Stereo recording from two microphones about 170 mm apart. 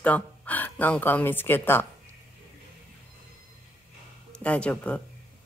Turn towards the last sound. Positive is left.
turn(degrees=5)  # may be behind; listen again after turning